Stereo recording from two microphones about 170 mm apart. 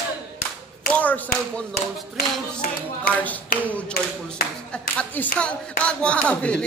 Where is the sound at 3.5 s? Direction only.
65° left (ahead or behind).